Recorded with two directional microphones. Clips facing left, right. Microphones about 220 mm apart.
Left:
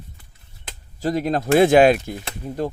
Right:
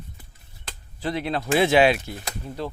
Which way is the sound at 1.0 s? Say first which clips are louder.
Left 5 dB; 45° left (ahead or behind).